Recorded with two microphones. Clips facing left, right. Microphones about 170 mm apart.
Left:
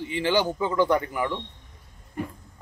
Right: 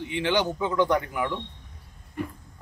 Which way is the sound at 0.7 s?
5° left (ahead or behind).